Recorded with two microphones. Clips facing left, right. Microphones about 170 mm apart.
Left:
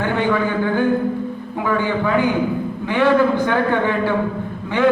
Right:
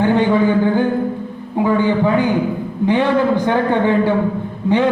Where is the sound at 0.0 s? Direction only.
20° right (ahead or behind).